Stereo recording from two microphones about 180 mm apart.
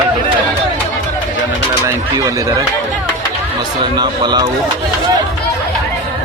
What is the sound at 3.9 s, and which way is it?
Speech, 25° right (ahead or behind).